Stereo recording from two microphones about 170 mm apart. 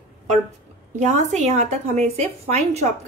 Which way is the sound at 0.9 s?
40° right (ahead or behind).